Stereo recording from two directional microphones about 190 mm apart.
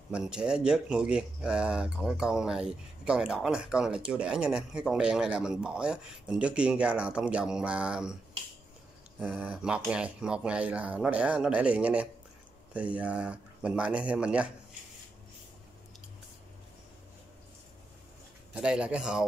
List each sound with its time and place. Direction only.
0.1 s speech: 5° right (ahead or behind)
9.3 s speech: 5° right (ahead or behind)
18.5 s speech: 5° right (ahead or behind)